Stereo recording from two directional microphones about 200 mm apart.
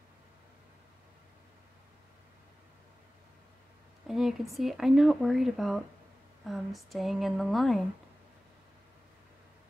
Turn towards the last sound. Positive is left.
turn(degrees=0)  # may be behind; listen again after turning